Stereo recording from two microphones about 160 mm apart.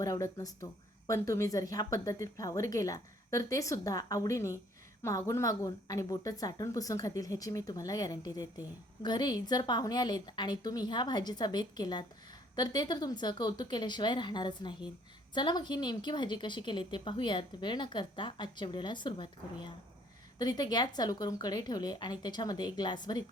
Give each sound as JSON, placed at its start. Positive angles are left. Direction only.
{"t": 0.0, "sound": "a woman's voice", "side_deg": 20}